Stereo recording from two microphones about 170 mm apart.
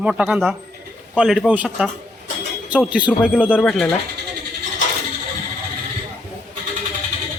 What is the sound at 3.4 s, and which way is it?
Speech, 5° left (ahead or behind).